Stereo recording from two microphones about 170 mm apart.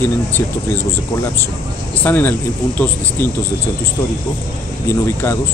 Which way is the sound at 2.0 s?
10° left (ahead or behind).